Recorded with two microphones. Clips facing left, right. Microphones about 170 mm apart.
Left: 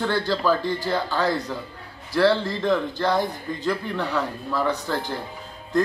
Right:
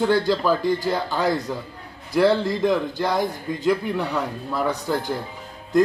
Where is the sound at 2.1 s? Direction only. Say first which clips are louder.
Right 2 dB; 15° right (ahead or behind).